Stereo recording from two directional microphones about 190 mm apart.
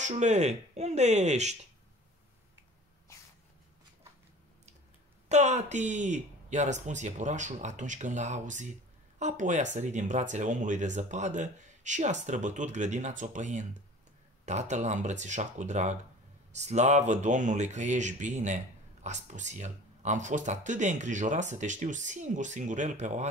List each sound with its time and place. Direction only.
0.0 s speech: 35° right (ahead or behind)
5.3 s speech: 35° right (ahead or behind)